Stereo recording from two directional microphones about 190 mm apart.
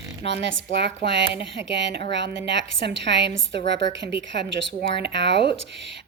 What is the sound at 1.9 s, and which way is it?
A woman's voice, 60° right (ahead or behind).